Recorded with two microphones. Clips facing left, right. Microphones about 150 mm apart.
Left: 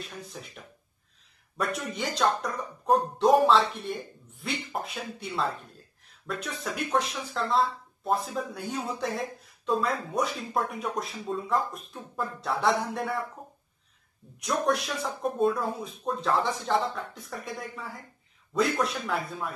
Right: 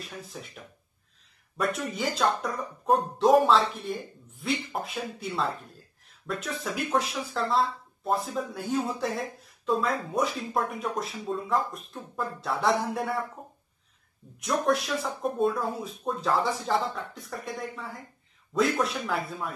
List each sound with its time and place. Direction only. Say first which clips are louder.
0.0 s speech: even; centre (ahead or behind)
14.4 s speech: right 1 dB; centre (ahead or behind)